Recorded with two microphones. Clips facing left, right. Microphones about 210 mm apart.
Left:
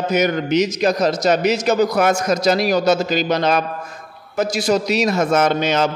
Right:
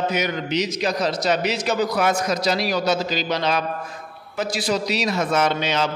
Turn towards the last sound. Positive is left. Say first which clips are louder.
# left 4 dB
turn(degrees=45)  # may be behind; listen again after turning